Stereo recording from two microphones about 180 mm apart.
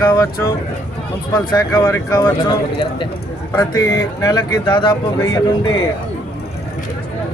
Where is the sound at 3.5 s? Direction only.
20° left (ahead or behind).